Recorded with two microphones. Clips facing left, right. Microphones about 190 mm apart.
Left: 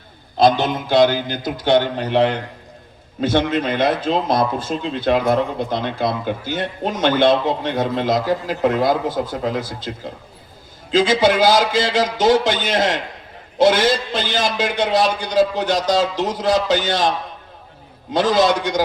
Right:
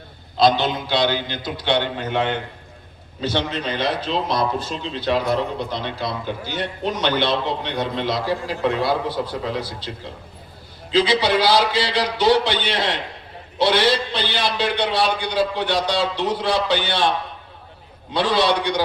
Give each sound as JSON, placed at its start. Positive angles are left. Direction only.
{"t": 0.3, "sound": "speech", "side_deg": 45}
{"t": 3.2, "sound": "speech", "side_deg": 50}